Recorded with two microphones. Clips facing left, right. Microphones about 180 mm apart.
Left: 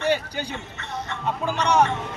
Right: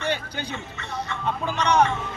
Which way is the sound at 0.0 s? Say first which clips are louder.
Left 4 dB; 10° left (ahead or behind).